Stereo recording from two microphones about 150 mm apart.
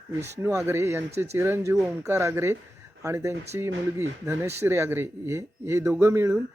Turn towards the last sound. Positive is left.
turn(degrees=-15)  # may be behind; listen again after turning